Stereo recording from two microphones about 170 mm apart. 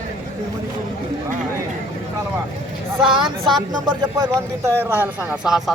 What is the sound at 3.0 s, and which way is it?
Speech, 30° right (ahead or behind).